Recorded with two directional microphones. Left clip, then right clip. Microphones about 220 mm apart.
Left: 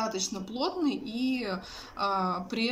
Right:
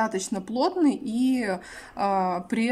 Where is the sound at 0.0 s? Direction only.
30° right (ahead or behind).